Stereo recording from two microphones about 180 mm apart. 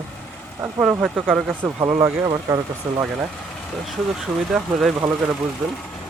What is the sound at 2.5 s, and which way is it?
Speech, 20° right (ahead or behind).